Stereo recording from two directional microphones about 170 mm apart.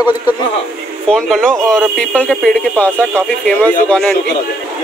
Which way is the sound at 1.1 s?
Centre (ahead or behind).